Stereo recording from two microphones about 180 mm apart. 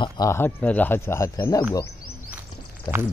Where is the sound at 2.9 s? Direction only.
20° left (ahead or behind).